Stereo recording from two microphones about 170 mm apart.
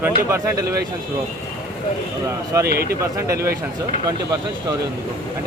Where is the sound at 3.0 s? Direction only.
20° right (ahead or behind).